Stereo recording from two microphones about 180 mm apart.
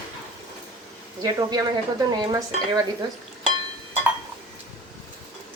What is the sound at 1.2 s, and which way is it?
A woman's voice, 20° right (ahead or behind).